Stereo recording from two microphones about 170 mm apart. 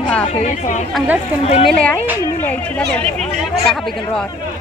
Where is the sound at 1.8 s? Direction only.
10° left (ahead or behind).